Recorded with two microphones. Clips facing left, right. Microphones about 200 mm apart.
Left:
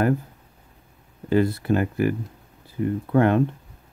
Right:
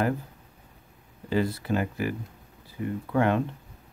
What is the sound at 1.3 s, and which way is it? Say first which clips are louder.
Speech: left 6 dB; 55° left (ahead or behind).